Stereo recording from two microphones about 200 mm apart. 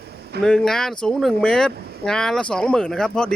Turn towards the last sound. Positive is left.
turn(degrees=5)  # may be behind; listen again after turning